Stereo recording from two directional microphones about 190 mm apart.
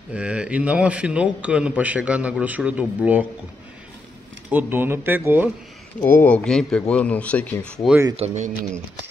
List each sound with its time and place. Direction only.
0.1 s a man's voice: 5° right (ahead or behind)
4.5 s a man's voice: 10° right (ahead or behind)
5.9 s speech: 10° left (ahead or behind)
8.2 s speech: 35° right (ahead or behind)